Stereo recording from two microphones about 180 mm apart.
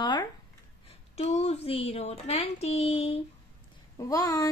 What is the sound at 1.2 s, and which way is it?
A woman's voice, 35° left (ahead or behind).